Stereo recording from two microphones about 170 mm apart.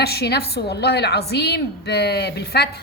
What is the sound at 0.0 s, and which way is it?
A woman's voice, 70° left (ahead or behind).